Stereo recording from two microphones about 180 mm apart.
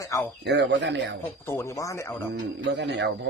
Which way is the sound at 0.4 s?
75° right (ahead or behind).